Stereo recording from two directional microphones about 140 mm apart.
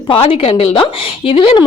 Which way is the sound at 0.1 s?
40° left (ahead or behind).